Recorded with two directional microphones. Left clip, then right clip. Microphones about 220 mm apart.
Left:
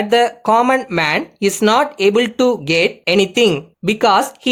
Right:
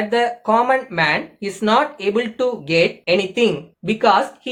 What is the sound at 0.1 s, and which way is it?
Speech, 50° left (ahead or behind).